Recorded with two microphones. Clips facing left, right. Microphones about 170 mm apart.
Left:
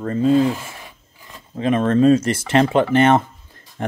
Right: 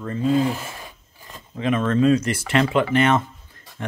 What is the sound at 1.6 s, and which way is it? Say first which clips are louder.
Speech: left 4 dB; 40° left (ahead or behind).